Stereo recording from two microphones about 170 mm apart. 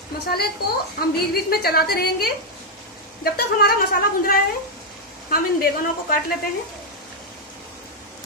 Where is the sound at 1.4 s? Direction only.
65° left (ahead or behind).